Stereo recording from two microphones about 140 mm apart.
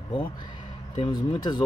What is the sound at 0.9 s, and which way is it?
Speech, 30° left (ahead or behind).